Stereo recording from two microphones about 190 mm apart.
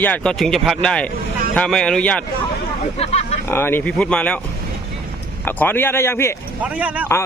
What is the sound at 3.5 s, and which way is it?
Speech, 10° left (ahead or behind).